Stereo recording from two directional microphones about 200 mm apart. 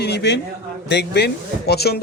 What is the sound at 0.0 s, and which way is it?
A man's voice, 60° left (ahead or behind).